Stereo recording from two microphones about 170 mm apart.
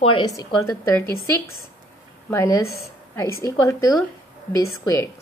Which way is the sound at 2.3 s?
15° left (ahead or behind).